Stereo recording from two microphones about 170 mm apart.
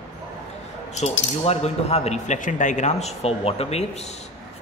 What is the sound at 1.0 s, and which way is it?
Speech, 40° left (ahead or behind).